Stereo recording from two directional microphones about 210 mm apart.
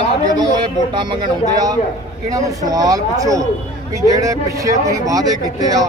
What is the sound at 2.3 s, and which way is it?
Speech, 15° right (ahead or behind).